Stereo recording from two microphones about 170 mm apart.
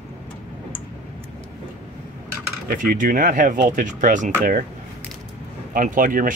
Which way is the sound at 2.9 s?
55° right (ahead or behind).